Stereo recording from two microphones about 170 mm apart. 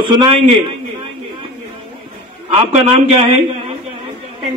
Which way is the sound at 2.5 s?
35° right (ahead or behind).